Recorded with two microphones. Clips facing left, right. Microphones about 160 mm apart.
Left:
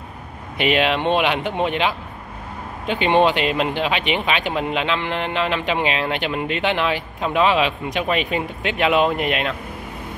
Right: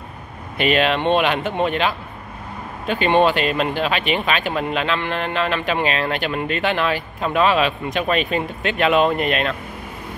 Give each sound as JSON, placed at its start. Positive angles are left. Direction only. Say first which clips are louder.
{"t": 0.6, "sound": "speech", "louder": "right 1 dB", "side_deg": 15}